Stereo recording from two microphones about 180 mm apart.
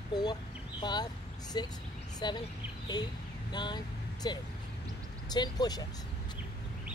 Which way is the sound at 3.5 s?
25° left (ahead or behind).